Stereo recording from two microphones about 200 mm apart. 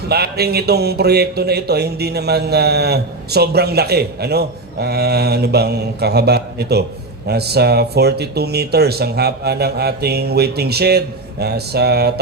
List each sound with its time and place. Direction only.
0.1 s speech: 55° right (ahead or behind)